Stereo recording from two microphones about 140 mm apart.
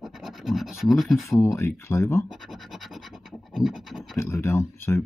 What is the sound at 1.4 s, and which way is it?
Speech, 20° left (ahead or behind).